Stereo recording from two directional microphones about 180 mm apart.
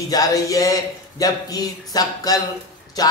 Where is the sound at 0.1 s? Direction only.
20° left (ahead or behind).